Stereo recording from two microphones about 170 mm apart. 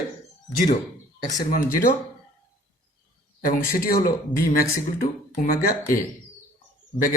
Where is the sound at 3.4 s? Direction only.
55° left (ahead or behind).